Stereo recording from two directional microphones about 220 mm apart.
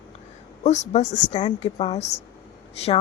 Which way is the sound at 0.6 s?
30° left (ahead or behind).